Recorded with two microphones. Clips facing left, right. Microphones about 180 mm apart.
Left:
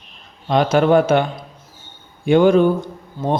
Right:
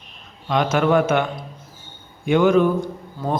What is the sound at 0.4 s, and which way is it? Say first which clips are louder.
Speech: left 4 dB; 35° left (ahead or behind).